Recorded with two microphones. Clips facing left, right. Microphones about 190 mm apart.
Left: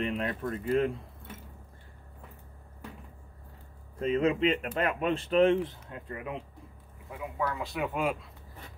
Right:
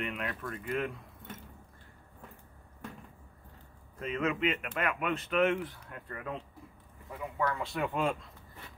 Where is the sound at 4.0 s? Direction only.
35° left (ahead or behind); by 6.4 s 15° left (ahead or behind).